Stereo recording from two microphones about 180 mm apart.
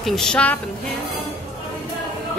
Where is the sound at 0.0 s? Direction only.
Centre (ahead or behind).